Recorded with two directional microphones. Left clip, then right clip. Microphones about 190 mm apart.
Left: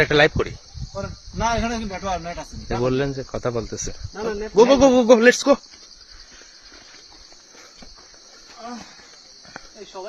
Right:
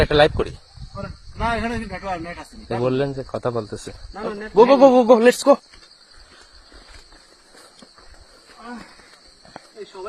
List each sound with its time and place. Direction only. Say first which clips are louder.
0.0 s speech: right 1 dB; 15° left (ahead or behind)